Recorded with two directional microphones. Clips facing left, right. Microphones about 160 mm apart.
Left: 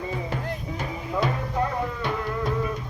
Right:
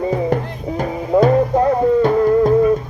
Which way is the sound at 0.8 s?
45° right (ahead or behind).